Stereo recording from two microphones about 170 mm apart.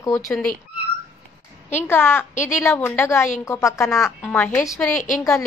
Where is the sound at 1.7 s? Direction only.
10° left (ahead or behind).